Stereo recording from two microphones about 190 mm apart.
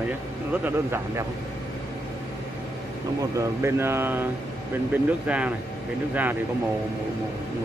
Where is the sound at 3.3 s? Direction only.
15° right (ahead or behind).